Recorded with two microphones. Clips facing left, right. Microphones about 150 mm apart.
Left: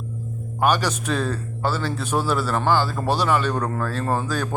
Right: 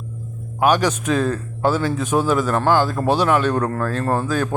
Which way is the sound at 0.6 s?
10° right (ahead or behind).